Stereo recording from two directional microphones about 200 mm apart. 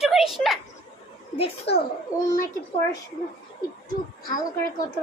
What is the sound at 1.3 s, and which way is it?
Speech, 30° left (ahead or behind).